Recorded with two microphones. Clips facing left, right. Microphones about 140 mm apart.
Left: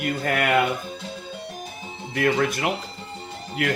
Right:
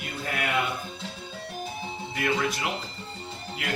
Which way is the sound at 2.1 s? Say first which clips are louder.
Left 6 dB; 50° left (ahead or behind).